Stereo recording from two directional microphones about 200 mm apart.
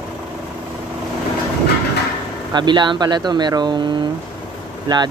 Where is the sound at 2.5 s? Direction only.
20° right (ahead or behind).